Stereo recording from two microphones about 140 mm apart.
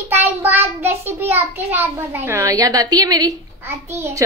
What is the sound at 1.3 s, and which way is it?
A child's voice, 15° right (ahead or behind).